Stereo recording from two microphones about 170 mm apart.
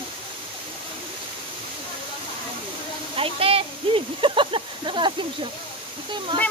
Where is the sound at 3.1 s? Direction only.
35° right (ahead or behind).